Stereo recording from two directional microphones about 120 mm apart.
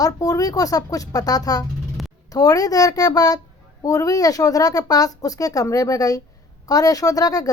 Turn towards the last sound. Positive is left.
turn(degrees=30)  # may be behind; listen again after turning